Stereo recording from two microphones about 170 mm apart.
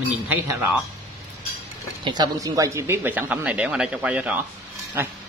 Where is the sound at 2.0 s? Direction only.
25° right (ahead or behind); by 5.0 s 10° right (ahead or behind).